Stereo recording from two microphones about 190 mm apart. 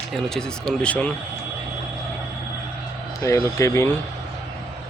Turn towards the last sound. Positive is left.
turn(degrees=15)  # may be behind; listen again after turning